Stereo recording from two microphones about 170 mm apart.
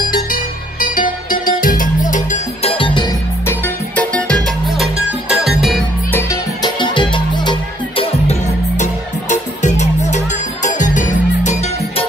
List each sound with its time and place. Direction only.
0.1 s music: 55° left (ahead or behind)
2.7 s music: 30° left (ahead or behind)
3.4 s music: 10° left (ahead or behind)
6.1 s music: 20° left (ahead or behind); by 12.1 s 40° left (ahead or behind)